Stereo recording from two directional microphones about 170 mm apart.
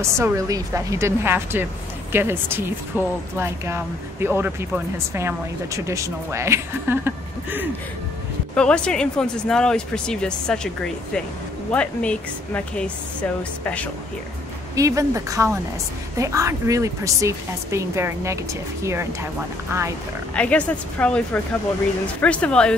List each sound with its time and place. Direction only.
0.2 s speech: 20° right (ahead or behind)
8.5 s speech: 5° left (ahead or behind)
14.8 s speech: 20° right (ahead or behind)
20.3 s speech: 5° left (ahead or behind)